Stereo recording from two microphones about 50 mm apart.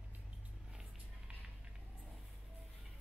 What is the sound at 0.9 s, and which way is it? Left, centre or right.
Vehicle, right.